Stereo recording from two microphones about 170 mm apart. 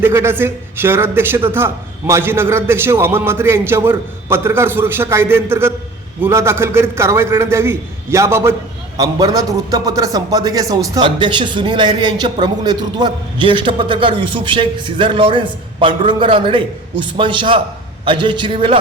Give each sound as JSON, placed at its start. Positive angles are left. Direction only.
{"t": 0.0, "sound": "a man's voice", "side_deg": -15}